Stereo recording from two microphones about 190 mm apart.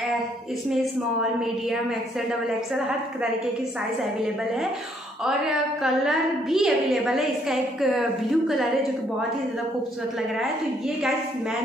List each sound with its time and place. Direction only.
2.4 s a woman's voice: 5° right (ahead or behind)
5.2 s a woman's voice: 5° right (ahead or behind)